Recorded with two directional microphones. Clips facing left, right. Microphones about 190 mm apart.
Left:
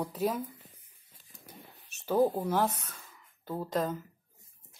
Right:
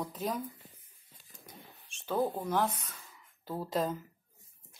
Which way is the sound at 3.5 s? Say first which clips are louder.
Left 1 dB; 5° right (ahead or behind).